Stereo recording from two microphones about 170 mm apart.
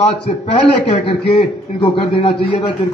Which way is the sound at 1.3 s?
35° left (ahead or behind).